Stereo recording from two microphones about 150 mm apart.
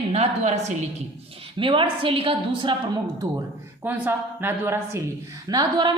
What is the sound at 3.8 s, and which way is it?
A woman's voice, 10° right (ahead or behind).